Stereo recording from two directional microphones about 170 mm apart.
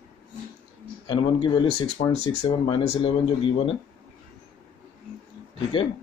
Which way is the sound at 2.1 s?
40° left (ahead or behind).